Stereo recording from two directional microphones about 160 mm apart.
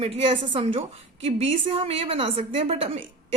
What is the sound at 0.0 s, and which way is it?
A woman's voice, 35° right (ahead or behind).